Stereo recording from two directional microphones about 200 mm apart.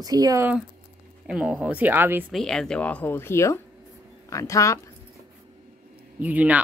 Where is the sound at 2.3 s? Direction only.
Centre (ahead or behind).